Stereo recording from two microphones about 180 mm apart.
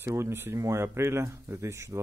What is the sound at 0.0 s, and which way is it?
Speech, 15° right (ahead or behind).